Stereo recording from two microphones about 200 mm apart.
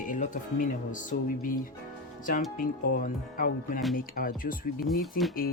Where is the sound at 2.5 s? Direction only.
45° left (ahead or behind).